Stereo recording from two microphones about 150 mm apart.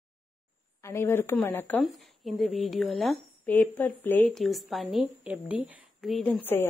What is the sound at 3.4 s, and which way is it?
Speech, 10° left (ahead or behind).